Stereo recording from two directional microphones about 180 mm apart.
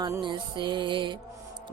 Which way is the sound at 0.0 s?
25° right (ahead or behind).